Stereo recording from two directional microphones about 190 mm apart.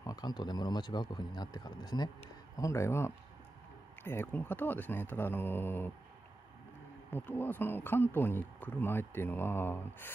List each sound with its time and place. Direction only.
0.0 s speech: 20° left (ahead or behind)
7.1 s speech: 10° left (ahead or behind)